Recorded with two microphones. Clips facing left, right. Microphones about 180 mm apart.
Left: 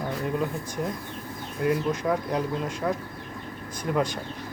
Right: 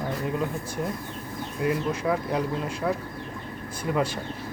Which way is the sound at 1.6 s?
5° right (ahead or behind).